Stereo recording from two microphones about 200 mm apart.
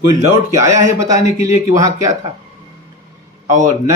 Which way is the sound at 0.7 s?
15° right (ahead or behind).